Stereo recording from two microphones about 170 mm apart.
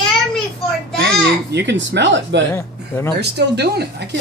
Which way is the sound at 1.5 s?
90° right.